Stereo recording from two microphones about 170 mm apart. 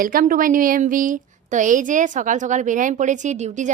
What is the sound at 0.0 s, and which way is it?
A woman's voice, 55° right (ahead or behind).